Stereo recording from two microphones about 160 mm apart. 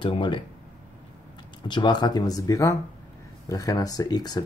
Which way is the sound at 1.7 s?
25° left (ahead or behind).